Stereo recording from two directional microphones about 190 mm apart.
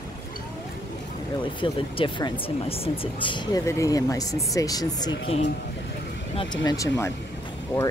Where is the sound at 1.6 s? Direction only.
25° left (ahead or behind).